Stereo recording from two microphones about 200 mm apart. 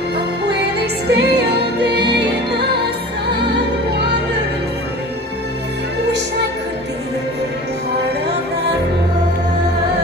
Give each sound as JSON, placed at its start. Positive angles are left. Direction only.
{"t": 1.1, "sound": "music", "side_deg": -55}